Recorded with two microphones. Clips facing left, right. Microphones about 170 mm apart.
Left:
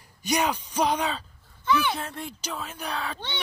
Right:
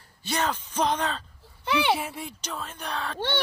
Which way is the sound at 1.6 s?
70° right (ahead or behind).